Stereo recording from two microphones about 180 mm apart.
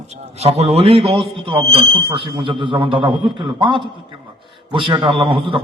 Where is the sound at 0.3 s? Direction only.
35° right (ahead or behind).